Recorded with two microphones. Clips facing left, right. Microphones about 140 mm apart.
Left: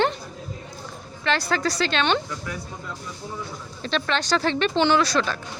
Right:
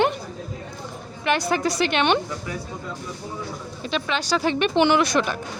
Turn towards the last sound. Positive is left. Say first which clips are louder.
# right 1 dB
turn(degrees=-15)  # may be behind; listen again after turning